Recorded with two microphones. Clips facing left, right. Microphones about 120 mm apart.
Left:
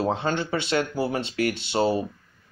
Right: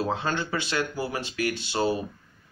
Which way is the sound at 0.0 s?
20° left (ahead or behind).